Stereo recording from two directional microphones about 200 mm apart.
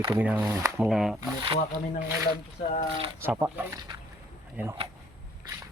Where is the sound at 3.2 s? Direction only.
10° right (ahead or behind).